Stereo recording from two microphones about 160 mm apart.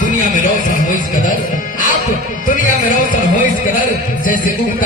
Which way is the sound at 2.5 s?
55° left (ahead or behind).